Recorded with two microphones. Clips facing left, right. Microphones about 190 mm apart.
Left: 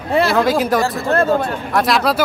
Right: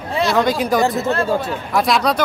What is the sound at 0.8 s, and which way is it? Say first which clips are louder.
Speech: right 2 dB; 20° right (ahead or behind).